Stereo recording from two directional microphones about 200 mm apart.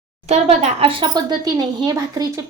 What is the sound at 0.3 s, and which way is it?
A woman's voice, 30° right (ahead or behind).